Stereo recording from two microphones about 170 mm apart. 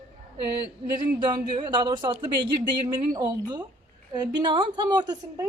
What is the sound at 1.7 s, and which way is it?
A woman's voice, 25° right (ahead or behind).